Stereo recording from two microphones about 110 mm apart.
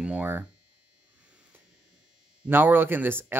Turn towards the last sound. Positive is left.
turn(degrees=-20)  # may be behind; listen again after turning